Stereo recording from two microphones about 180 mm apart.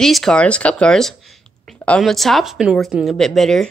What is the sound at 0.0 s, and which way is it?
A woman's voice, centre (ahead or behind).